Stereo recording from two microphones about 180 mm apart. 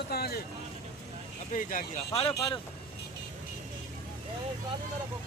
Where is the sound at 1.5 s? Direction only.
45° left (ahead or behind).